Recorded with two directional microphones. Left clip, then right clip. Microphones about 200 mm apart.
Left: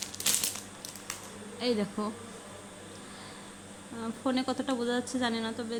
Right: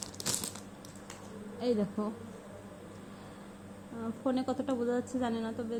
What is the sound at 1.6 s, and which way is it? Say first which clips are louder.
Speech: left 1 dB; 15° left (ahead or behind).